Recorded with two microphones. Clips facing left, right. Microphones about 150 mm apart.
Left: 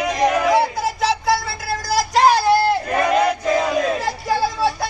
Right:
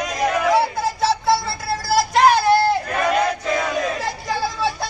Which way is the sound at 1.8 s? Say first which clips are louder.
Even; centre (ahead or behind).